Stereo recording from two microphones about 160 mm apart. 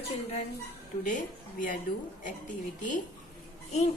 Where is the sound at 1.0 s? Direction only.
55° left (ahead or behind).